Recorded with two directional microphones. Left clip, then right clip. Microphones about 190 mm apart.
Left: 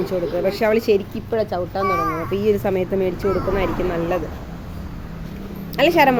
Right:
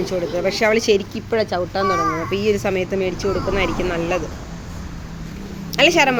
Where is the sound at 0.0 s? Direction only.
10° left (ahead or behind); by 2.0 s 10° right (ahead or behind).